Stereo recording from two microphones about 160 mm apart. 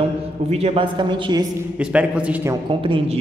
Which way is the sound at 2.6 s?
35° right (ahead or behind).